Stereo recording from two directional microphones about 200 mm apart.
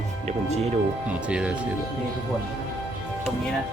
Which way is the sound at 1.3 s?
5° right (ahead or behind).